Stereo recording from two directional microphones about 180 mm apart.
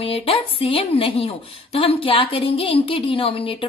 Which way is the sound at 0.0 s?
30° left (ahead or behind).